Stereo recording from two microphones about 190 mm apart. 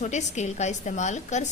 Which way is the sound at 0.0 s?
40° left (ahead or behind).